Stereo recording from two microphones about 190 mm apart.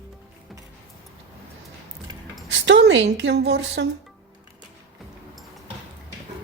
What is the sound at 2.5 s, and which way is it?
A woman's voice, 65° right (ahead or behind).